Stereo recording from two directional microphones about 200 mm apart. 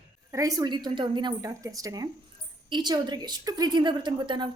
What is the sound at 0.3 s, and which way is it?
A woman's voice, 15° right (ahead or behind).